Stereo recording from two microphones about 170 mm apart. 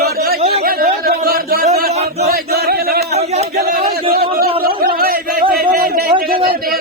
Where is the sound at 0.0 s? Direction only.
65° right (ahead or behind).